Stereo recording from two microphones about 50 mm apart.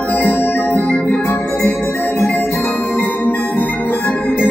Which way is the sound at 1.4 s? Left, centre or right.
Left.